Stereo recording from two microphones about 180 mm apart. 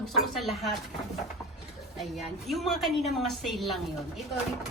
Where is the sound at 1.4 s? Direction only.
Centre (ahead or behind).